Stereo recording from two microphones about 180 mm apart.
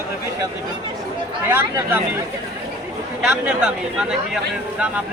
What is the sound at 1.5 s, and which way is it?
Speech, 10° right (ahead or behind).